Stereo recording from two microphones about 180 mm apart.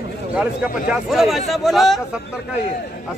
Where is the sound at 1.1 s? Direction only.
Centre (ahead or behind).